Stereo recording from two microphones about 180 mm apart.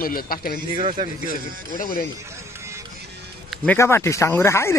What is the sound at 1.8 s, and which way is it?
Speech, 55° left (ahead or behind).